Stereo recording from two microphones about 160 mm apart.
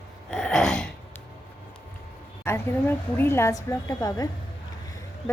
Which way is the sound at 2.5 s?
15° left (ahead or behind).